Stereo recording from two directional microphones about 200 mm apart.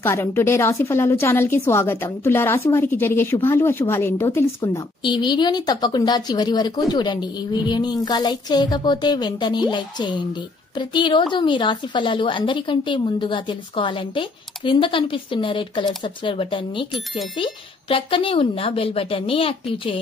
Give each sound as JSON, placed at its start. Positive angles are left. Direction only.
{"t": 0.0, "sound": "a woman's voice", "side_deg": 10}
{"t": 5.0, "sound": "a woman's voice", "side_deg": 20}